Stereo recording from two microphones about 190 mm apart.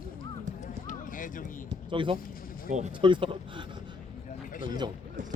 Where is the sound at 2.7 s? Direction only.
40° right (ahead or behind).